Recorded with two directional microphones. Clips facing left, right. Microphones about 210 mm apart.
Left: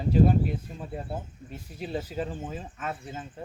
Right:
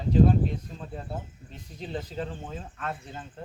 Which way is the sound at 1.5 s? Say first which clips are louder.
Left 3 dB; 10° left (ahead or behind).